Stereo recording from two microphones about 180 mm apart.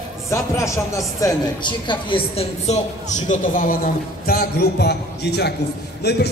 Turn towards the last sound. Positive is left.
turn(degrees=70)  # may be behind; listen again after turning